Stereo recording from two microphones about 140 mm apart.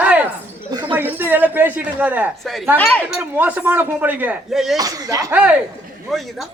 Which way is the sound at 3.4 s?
10° right (ahead or behind).